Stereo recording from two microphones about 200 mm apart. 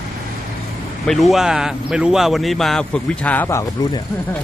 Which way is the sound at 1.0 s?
Centre (ahead or behind).